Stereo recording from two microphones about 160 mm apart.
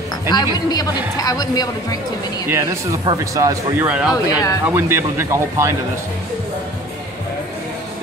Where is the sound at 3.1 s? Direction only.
20° right (ahead or behind).